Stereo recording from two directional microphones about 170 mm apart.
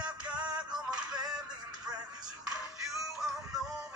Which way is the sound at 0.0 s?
5° right (ahead or behind).